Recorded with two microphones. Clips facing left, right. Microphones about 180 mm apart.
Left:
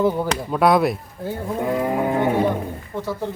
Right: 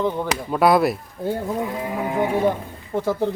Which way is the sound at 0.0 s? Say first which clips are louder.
Left 3 dB; 10° left (ahead or behind).